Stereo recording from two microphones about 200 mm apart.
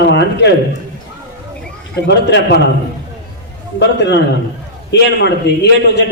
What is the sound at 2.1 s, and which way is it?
Speech, 60° left (ahead or behind).